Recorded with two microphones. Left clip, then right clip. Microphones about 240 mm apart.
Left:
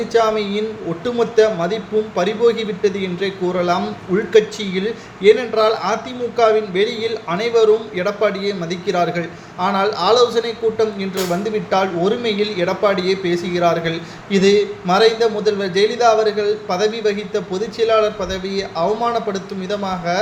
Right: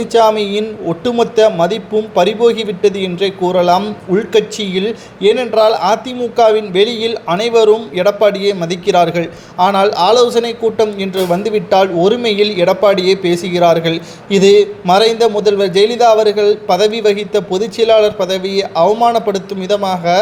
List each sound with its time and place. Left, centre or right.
0.1 s a man's voice: right